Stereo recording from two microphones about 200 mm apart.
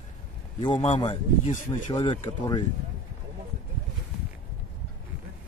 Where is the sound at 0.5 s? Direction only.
25° left (ahead or behind).